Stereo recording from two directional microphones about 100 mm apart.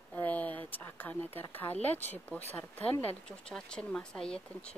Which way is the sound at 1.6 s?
20° left (ahead or behind).